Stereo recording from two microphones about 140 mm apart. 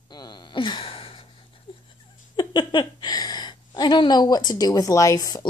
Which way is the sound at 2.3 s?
30° left (ahead or behind).